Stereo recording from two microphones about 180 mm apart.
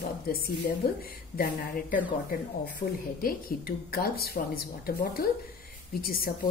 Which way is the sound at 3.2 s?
55° left (ahead or behind).